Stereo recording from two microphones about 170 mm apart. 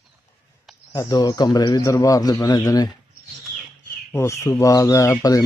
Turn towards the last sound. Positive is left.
turn(degrees=20)  # may be behind; listen again after turning